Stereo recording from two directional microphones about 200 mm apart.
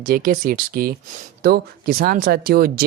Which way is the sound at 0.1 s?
45° right (ahead or behind).